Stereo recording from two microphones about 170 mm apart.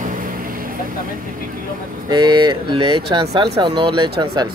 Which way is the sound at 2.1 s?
25° right (ahead or behind).